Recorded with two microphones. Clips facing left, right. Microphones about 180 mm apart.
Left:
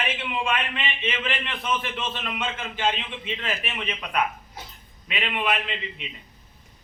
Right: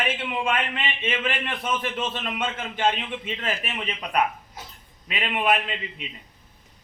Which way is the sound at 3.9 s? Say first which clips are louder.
Right 2 dB; 35° right (ahead or behind).